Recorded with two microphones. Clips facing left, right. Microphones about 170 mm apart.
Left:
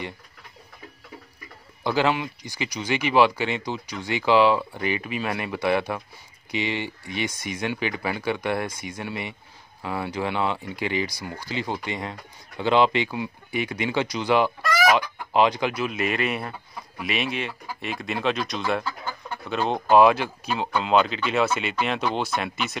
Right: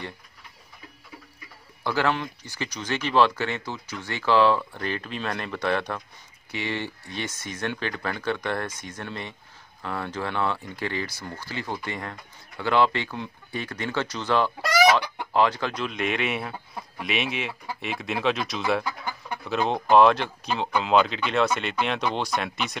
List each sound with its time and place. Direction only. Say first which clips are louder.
1.8 s speech: left 2 dB; 15° left (ahead or behind)
14.6 s fowl: right 1 dB; 80° right
15.3 s speech: left 2 dB; 15° left (ahead or behind)